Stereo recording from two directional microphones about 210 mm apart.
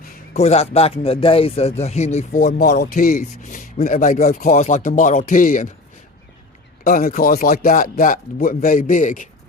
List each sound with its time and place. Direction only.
0.3 s speech: 30° left (ahead or behind)
6.8 s speech: 40° left (ahead or behind)